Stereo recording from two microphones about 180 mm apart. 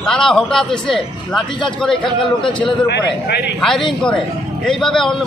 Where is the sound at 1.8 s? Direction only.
5° left (ahead or behind).